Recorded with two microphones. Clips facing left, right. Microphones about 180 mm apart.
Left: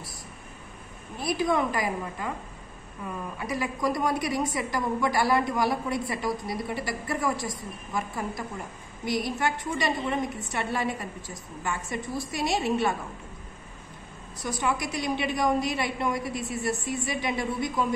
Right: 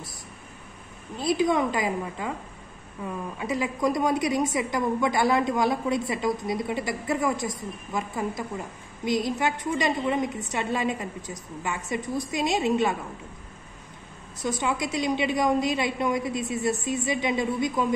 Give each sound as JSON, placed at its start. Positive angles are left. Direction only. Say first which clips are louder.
{"t": 1.2, "sound": "a woman's voice", "louder": "right 3 dB", "side_deg": -20}
{"t": 3.3, "sound": "a woman's voice", "louder": "right 3 dB", "side_deg": -20}
{"t": 14.4, "sound": "a woman's voice", "louder": "right 2 dB", "side_deg": -20}